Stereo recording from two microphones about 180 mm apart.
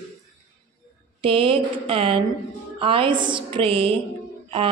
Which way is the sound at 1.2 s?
30° right (ahead or behind).